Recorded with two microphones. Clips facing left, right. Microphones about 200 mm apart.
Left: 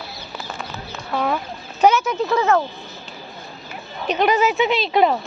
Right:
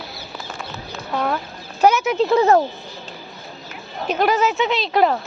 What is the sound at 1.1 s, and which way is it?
Speech, centre (ahead or behind).